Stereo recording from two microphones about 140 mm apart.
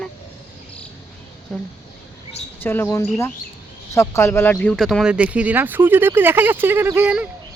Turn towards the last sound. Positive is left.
turn(degrees=-10)  # may be behind; listen again after turning